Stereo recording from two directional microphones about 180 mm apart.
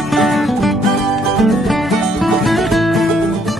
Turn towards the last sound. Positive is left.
turn(degrees=0)  # may be behind; listen again after turning